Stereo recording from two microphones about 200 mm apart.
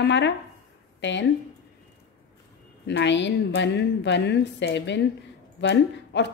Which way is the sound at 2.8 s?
60° left (ahead or behind).